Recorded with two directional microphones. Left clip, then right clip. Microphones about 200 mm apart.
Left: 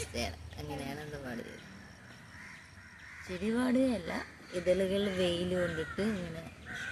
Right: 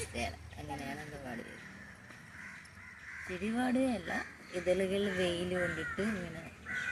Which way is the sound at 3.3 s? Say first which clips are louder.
Left 2 dB; 20° left (ahead or behind).